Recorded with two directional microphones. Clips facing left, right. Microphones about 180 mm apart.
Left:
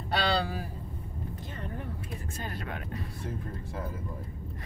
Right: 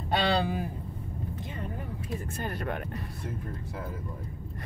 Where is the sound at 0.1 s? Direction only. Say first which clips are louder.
Right 2 dB; 20° right (ahead or behind).